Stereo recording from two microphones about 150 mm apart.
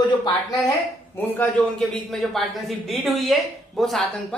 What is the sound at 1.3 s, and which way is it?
A man's voice, 10° left (ahead or behind).